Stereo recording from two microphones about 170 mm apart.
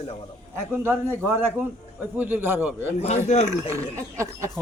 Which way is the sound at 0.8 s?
15° right (ahead or behind).